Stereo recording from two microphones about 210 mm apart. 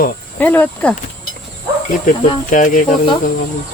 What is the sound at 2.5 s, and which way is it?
Speech, 40° left (ahead or behind).